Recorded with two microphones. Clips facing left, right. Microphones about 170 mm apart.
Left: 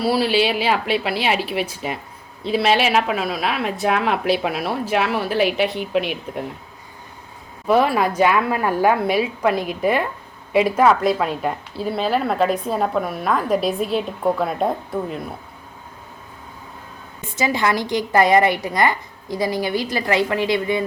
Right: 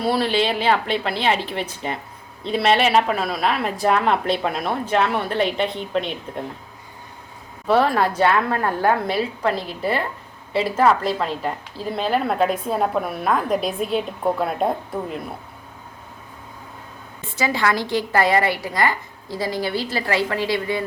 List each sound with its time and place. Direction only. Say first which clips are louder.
0.0 s a woman's voice: left 2 dB; 5° left (ahead or behind)
7.7 s a woman's voice: left 1 dB; 10° left (ahead or behind)
17.2 s a woman's voice: left 2 dB; 20° left (ahead or behind)